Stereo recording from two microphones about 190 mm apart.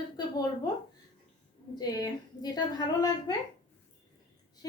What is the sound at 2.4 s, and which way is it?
Speech, 20° left (ahead or behind).